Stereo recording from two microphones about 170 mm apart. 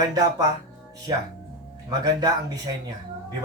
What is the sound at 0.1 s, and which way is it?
Speech, 20° right (ahead or behind).